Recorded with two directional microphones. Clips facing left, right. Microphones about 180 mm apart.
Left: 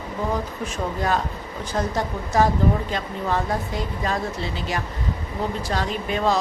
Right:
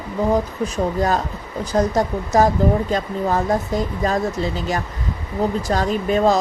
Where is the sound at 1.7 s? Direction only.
40° right (ahead or behind).